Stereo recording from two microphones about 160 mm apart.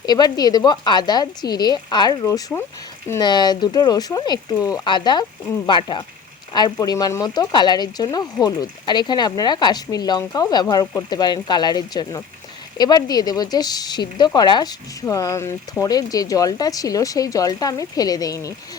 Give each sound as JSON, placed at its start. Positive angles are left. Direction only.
{"t": 0.0, "sound": "speech", "side_deg": 25}